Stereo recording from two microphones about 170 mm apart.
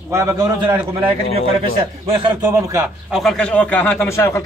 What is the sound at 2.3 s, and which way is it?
Speech, 20° right (ahead or behind).